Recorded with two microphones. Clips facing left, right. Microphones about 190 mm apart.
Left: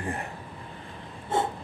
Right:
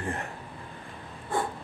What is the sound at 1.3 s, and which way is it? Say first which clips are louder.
Snort: left 3 dB; 25° left (ahead or behind).